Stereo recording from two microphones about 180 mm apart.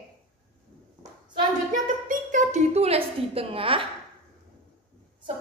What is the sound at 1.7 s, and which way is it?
A woman's voice, 45° right (ahead or behind).